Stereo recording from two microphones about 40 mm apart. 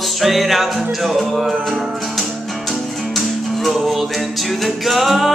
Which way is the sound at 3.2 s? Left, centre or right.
Centre.